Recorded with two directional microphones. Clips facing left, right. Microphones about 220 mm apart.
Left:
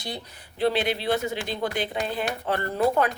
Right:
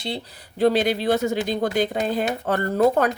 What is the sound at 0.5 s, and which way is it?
A woman's voice, 40° right (ahead or behind).